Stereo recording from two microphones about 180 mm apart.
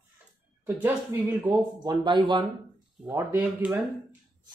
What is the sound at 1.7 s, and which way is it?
Speech, 25° right (ahead or behind).